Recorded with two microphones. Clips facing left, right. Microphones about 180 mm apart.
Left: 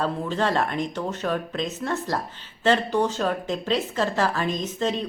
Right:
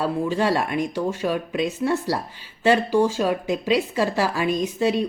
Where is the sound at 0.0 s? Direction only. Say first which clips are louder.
Right 3 dB; 10° right (ahead or behind).